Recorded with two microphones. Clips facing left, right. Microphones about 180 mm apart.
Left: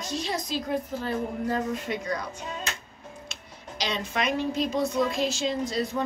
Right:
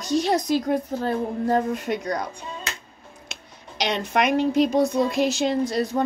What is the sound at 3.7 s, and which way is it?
A woman's voice, 70° right (ahead or behind).